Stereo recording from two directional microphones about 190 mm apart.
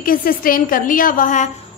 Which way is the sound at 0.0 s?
50° left (ahead or behind).